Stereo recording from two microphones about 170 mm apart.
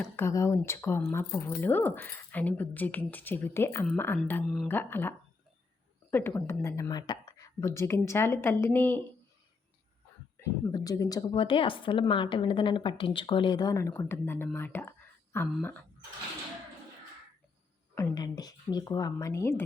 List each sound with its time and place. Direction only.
0.0 s a woman's voice: 15° left (ahead or behind)
4.4 s speech: centre (ahead or behind)
4.7 s a woman's voice: 10° left (ahead or behind)
10.7 s a woman's voice: 20° left (ahead or behind)
17.9 s a woman's voice: 20° left (ahead or behind)